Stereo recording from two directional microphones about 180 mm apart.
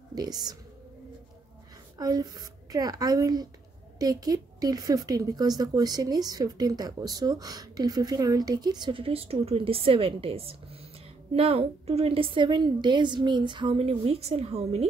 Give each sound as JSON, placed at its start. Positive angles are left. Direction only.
{"t": 0.1, "sound": "speech", "side_deg": -20}
{"t": 2.0, "sound": "a woman's voice", "side_deg": -20}